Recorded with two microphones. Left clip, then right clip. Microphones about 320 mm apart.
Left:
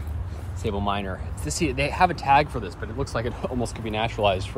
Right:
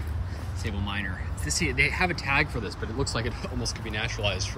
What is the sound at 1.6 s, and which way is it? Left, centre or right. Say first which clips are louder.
Speech: left 4 dB; left.